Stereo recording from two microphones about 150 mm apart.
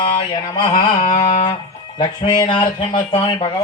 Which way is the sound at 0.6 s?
35° left (ahead or behind).